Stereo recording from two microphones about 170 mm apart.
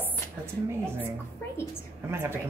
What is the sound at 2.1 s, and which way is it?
Speech, 15° right (ahead or behind).